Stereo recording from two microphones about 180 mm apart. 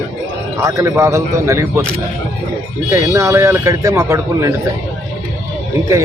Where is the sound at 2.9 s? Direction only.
15° right (ahead or behind).